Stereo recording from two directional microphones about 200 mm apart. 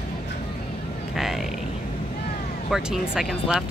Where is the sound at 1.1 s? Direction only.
Centre (ahead or behind).